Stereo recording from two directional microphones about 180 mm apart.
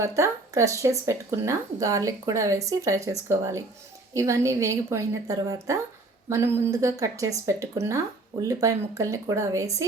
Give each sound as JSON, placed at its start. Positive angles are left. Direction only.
{"t": 0.0, "sound": "speech", "side_deg": -15}